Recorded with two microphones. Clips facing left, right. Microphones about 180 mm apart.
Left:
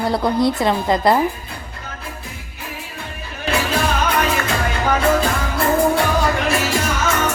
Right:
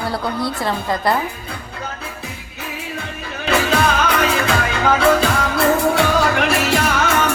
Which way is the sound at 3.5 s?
80° right.